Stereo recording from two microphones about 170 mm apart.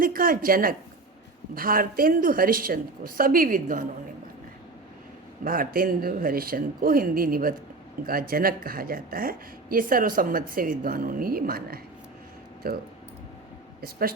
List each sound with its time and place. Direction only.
0.0 s a woman's voice: 55° right (ahead or behind)
5.4 s a woman's voice: 55° right (ahead or behind)